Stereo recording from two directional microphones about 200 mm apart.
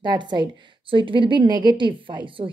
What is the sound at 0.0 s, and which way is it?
A woman's voice, 20° right (ahead or behind).